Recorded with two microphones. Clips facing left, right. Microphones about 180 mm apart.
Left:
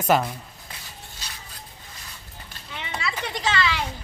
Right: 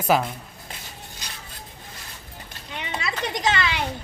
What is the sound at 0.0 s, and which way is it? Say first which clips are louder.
Speech: even; centre (ahead or behind).